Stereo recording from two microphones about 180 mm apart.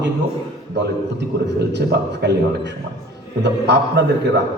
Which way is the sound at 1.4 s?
75° right (ahead or behind).